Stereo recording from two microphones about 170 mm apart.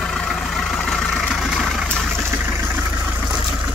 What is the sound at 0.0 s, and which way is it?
Vehicle, 5° left (ahead or behind).